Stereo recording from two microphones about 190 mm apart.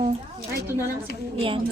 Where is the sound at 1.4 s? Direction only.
30° right (ahead or behind).